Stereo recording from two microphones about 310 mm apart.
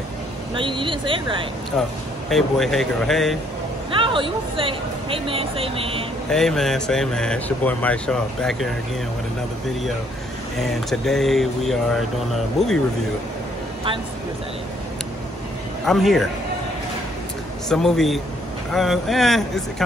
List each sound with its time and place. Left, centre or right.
0.6 s speech: centre
1.8 s speech: centre
3.9 s speech: centre
6.3 s speech: centre
10.6 s speech: centre
15.8 s speech: centre
17.6 s speech: centre